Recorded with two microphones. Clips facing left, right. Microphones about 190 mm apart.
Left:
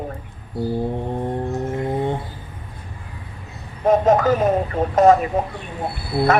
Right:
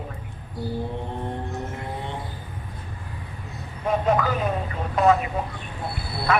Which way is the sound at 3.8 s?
45° left (ahead or behind).